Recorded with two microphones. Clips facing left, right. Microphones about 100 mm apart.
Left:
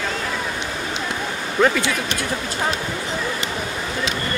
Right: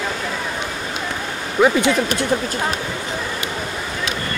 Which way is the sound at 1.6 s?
10° right (ahead or behind).